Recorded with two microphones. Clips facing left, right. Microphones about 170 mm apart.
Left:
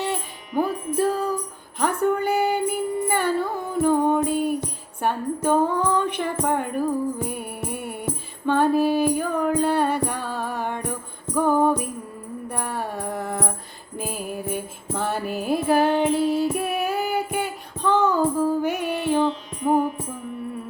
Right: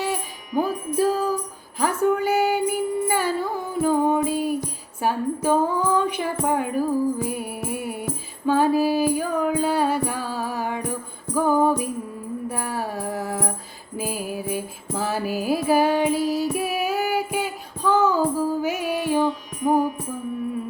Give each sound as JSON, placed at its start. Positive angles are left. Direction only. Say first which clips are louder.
{"t": 0.0, "sound": "music", "louder": "right 1 dB", "side_deg": -5}
{"t": 19.2, "sound": "music", "louder": "even", "side_deg": 25}
{"t": 19.6, "sound": "music", "louder": "even", "side_deg": -10}